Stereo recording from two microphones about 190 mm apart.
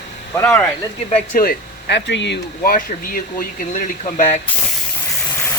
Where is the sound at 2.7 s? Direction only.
45° left (ahead or behind).